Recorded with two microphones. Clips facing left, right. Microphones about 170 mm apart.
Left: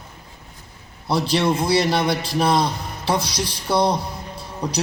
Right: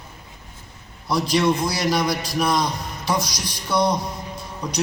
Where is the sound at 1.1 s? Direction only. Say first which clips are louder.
Even; 30° left (ahead or behind).